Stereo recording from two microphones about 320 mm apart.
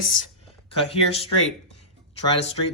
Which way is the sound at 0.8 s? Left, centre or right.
Centre.